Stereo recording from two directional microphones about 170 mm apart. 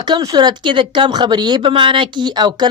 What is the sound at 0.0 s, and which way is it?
Speech, 20° right (ahead or behind).